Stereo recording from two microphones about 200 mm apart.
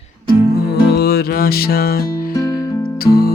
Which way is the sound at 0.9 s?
50° left (ahead or behind).